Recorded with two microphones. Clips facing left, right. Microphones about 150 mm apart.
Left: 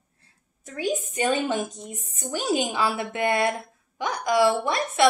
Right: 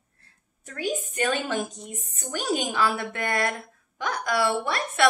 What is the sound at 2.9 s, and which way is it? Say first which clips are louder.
A woman's voice: left 3 dB; 10° left (ahead or behind).